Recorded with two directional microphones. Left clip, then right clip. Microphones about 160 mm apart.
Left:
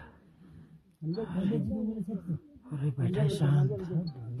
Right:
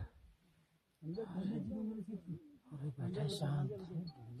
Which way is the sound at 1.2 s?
20° left (ahead or behind).